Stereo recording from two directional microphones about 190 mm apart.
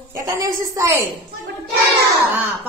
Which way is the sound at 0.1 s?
15° right (ahead or behind).